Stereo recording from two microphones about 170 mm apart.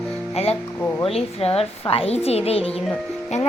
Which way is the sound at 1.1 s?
35° left (ahead or behind).